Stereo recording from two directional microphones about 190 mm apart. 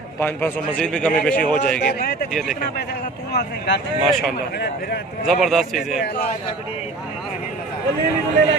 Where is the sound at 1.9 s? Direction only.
55° left (ahead or behind).